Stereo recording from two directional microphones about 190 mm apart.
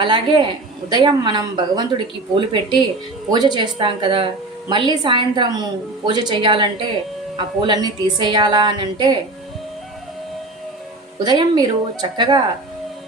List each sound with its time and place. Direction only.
0.0 s a woman's voice: 25° right (ahead or behind)
11.2 s a woman's voice: 20° right (ahead or behind)